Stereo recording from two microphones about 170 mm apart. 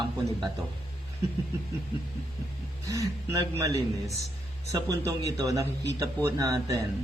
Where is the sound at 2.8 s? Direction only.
20° right (ahead or behind).